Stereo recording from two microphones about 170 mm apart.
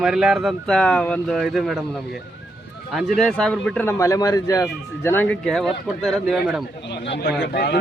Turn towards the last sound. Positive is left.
turn(degrees=70)  # may be behind; listen again after turning